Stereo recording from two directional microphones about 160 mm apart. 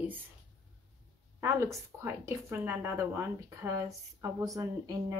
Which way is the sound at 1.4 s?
15° right (ahead or behind).